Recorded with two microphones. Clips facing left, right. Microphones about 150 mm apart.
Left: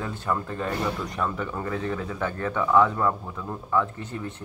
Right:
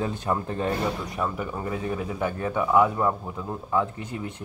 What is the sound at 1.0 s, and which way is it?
Speech, 5° right (ahead or behind).